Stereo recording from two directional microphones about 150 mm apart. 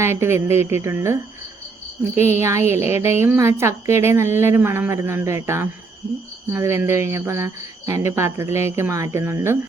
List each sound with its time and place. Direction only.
0.0 s speech: 15° right (ahead or behind)
2.3 s speech: 15° right (ahead or behind)